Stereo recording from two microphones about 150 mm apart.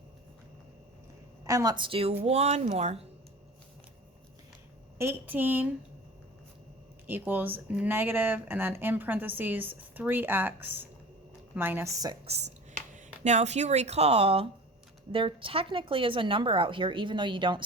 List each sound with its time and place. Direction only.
1.5 s a woman's voice: 25° right (ahead or behind); by 3.0 s 45° right (ahead or behind)
4.9 s speech: 15° right (ahead or behind)
7.1 s speech: 15° right (ahead or behind)
12.2 s a woman's voice: 45° right (ahead or behind)